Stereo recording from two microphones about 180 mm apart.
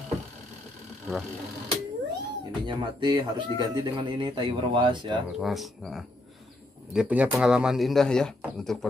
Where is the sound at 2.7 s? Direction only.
25° right (ahead or behind).